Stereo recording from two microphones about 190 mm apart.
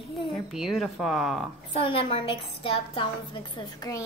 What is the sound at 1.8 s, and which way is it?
A woman's voice, 30° left (ahead or behind).